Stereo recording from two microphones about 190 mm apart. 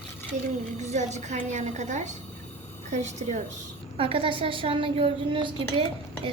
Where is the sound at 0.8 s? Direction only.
35° right (ahead or behind).